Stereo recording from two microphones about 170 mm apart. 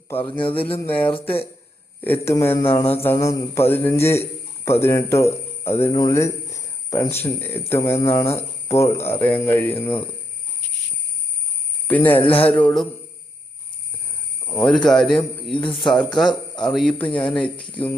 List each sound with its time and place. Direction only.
0.3 s speech: 30° left (ahead or behind)
1.1 s speech: 10° left (ahead or behind)
11.9 s speech: 10° left (ahead or behind)
12.2 s speech: 35° left (ahead or behind)
12.5 s speech: 5° left (ahead or behind)
14.4 s cricket: 15° left (ahead or behind)
14.8 s speech: centre (ahead or behind)
15.6 s speech: 30° left (ahead or behind)
15.9 s speech: 5° left (ahead or behind)
17.1 s speech: 30° left (ahead or behind)
17.3 s speech: 5° left (ahead or behind)